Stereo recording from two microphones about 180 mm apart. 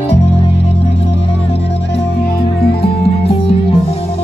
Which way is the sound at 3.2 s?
35° left (ahead or behind).